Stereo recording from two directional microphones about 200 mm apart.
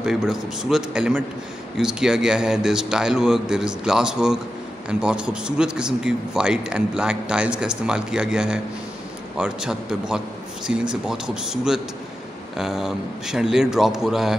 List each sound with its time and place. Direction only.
0.0 s a man's voice: 5° right (ahead or behind)